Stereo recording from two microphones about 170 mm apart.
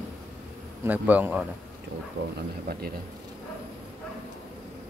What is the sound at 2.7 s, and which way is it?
Speech, 65° right (ahead or behind).